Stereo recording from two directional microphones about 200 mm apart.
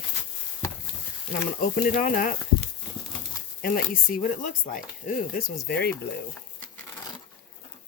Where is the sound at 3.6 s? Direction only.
45° left (ahead or behind).